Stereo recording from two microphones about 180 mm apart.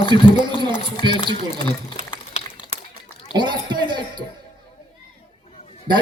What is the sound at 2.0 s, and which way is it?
Boiling, 35° left (ahead or behind).